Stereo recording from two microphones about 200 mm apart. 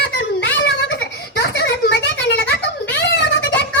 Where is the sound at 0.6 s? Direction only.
60° left (ahead or behind).